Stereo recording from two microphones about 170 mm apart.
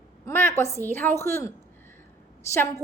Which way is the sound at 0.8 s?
15° left (ahead or behind).